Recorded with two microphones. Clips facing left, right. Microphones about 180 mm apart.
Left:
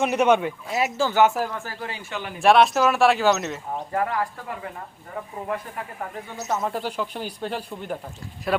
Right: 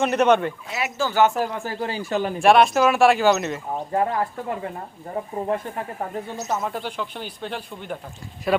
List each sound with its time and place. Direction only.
0.0 s speech: 10° left (ahead or behind)
0.7 s speech: 40° left (ahead or behind)
1.2 s speech: 5° left (ahead or behind)
1.5 s speech: 20° right (ahead or behind)
1.8 s speech: 35° right (ahead or behind)
2.4 s speech: centre (ahead or behind)
3.9 s speech: 25° right (ahead or behind)
6.5 s speech: centre (ahead or behind)